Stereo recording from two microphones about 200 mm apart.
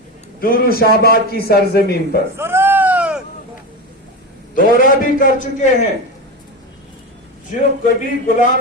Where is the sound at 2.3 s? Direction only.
10° right (ahead or behind).